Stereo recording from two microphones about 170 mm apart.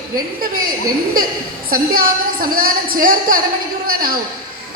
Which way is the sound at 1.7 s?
55° right (ahead or behind).